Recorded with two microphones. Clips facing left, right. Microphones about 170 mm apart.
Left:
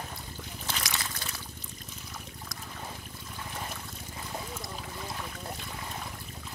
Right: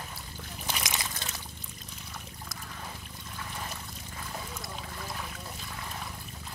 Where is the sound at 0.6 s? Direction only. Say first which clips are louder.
Right 1 dB; 15° right (ahead or behind).